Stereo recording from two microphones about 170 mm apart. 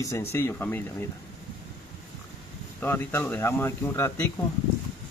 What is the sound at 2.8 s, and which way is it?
Speech, 10° left (ahead or behind).